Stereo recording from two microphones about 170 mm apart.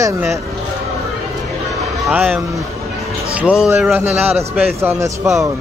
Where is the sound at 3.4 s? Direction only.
5° right (ahead or behind).